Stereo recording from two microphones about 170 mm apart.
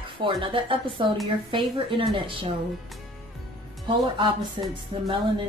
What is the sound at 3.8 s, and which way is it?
Speech, 30° right (ahead or behind).